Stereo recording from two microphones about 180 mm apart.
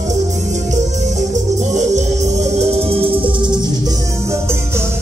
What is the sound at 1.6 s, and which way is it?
Music, 40° right (ahead or behind).